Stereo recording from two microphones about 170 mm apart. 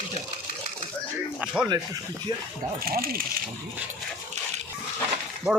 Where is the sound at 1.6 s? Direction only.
25° right (ahead or behind).